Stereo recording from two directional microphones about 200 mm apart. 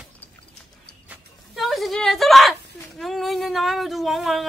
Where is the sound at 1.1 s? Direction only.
Centre (ahead or behind).